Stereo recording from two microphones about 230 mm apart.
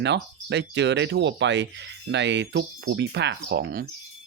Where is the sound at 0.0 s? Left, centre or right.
Right.